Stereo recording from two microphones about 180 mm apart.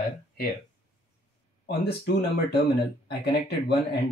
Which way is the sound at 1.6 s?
65° left (ahead or behind).